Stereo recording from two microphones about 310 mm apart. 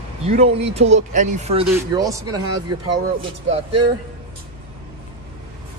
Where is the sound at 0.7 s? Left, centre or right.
Right.